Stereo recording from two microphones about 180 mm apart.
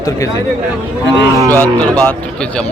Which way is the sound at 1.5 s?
10° left (ahead or behind).